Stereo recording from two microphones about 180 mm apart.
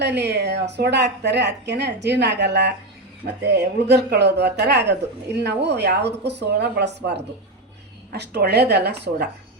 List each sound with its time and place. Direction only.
0.0 s speech: 70° right (ahead or behind)
8.1 s speech: 65° right (ahead or behind)